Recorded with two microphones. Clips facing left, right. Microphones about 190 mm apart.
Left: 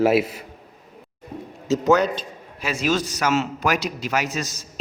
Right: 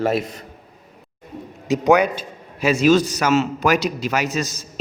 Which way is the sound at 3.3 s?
30° right (ahead or behind).